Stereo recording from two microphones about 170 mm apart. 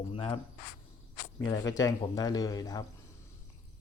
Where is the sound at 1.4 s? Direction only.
20° left (ahead or behind).